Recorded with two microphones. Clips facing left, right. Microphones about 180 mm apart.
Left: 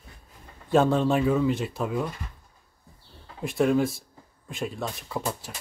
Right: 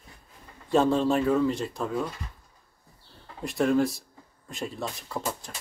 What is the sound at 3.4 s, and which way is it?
Speech, centre (ahead or behind).